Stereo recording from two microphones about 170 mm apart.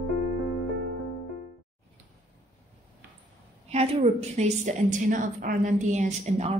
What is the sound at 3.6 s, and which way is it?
A woman's voice, 35° right (ahead or behind).